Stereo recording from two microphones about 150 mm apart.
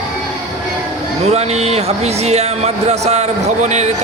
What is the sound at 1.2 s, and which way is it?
Speech, 45° right (ahead or behind).